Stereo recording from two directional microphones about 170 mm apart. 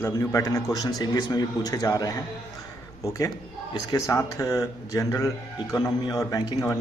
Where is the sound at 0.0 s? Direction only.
20° left (ahead or behind).